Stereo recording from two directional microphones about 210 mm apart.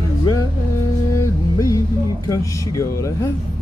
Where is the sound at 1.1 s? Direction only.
15° left (ahead or behind).